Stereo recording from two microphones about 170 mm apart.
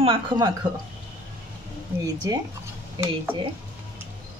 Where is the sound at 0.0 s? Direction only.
30° right (ahead or behind).